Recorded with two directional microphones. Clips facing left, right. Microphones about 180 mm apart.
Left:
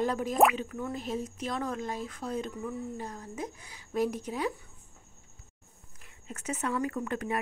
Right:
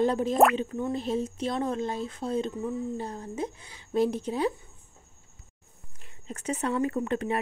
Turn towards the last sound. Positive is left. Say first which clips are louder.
# right 5 dB
turn(degrees=-25)  # may be behind; listen again after turning